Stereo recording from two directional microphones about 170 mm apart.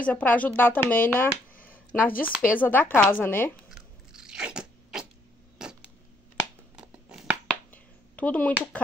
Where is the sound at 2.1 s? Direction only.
55° left (ahead or behind).